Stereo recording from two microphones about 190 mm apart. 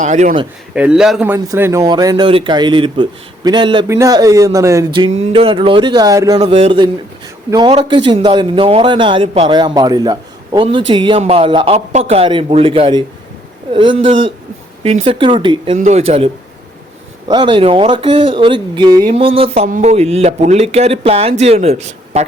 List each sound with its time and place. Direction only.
0.0 s speech: 40° right (ahead or behind)
0.7 s speech: 5° right (ahead or behind)
4.9 s speech: 30° right (ahead or behind)
15.7 s speech: 40° right (ahead or behind)